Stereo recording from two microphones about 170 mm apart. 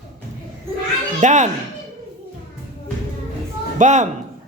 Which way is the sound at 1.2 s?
45° right (ahead or behind).